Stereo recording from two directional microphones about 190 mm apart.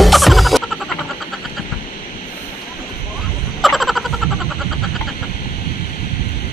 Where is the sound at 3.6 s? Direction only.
Centre (ahead or behind).